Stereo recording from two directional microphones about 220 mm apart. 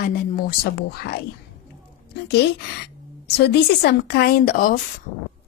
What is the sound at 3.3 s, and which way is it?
Speech, 50° left (ahead or behind).